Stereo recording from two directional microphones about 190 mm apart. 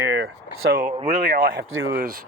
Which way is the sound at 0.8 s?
40° right (ahead or behind).